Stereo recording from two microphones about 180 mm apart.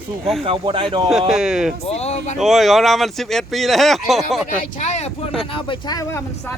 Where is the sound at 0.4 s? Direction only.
30° right (ahead or behind).